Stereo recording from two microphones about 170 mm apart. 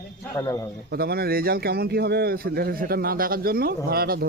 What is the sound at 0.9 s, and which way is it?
Speech, 70° right (ahead or behind).